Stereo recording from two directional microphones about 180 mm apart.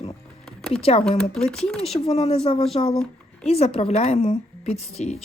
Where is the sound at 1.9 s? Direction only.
35° left (ahead or behind).